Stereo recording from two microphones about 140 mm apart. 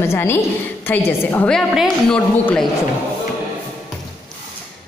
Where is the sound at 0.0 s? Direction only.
20° left (ahead or behind).